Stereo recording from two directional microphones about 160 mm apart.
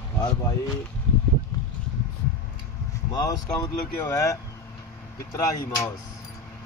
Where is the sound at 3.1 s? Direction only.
25° left (ahead or behind).